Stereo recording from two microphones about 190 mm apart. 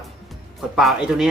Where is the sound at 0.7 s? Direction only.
5° right (ahead or behind).